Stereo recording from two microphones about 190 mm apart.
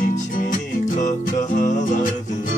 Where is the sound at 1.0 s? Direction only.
40° left (ahead or behind).